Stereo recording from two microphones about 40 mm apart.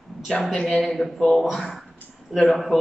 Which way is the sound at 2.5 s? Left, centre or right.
Centre.